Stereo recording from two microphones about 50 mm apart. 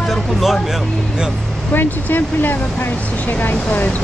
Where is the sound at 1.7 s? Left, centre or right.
Left.